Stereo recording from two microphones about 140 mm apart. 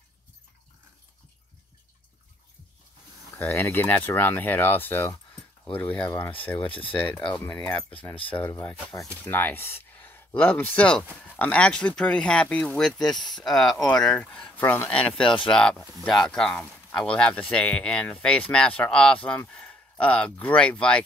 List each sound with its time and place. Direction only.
3.3 s speech: 20° left (ahead or behind)
6.7 s speech: 40° left (ahead or behind)
7.1 s speech: 10° left (ahead or behind)